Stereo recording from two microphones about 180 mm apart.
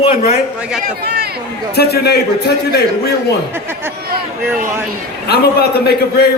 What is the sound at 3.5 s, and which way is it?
Speech, 15° right (ahead or behind).